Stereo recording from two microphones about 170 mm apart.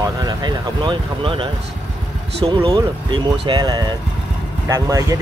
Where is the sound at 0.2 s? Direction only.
25° right (ahead or behind).